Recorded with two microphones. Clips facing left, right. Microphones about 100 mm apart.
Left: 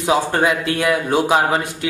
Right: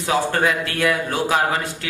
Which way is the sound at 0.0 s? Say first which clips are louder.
Left 3 dB; 20° left (ahead or behind).